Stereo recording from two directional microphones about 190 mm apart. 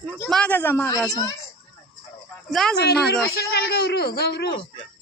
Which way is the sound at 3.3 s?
55° left (ahead or behind).